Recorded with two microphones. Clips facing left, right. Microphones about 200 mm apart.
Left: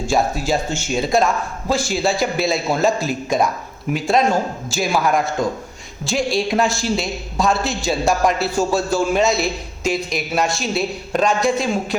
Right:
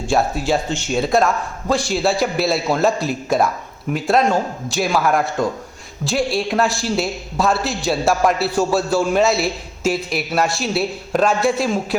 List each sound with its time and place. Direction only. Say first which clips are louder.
0.1 s a man's voice: right 1 dB; centre (ahead or behind)
0.4 s speech: right 1 dB; 45° left (ahead or behind)
0.9 s a man's voice: right 1 dB; centre (ahead or behind)